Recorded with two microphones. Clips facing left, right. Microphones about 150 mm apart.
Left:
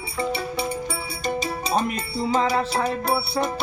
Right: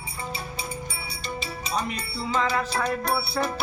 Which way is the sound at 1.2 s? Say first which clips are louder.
Left 8 dB; 45° left (ahead or behind).